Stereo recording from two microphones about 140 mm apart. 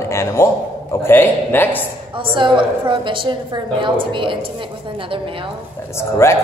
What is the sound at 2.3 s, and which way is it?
A woman's voice, 35° right (ahead or behind).